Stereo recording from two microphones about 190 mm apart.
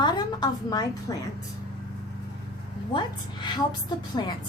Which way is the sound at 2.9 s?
25° left (ahead or behind).